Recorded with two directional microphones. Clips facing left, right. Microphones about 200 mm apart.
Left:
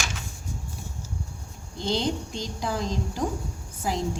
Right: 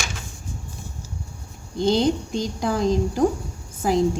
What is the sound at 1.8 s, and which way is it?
Speech, 50° right (ahead or behind).